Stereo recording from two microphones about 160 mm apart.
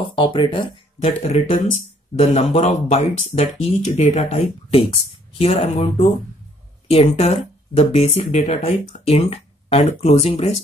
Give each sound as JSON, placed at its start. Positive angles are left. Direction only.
{"t": 0.1, "sound": "speech", "side_deg": 35}